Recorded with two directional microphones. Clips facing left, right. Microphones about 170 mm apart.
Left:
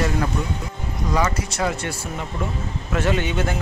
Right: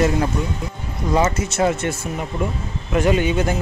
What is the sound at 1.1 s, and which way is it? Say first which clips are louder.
Speech: right 4 dB; 25° right (ahead or behind).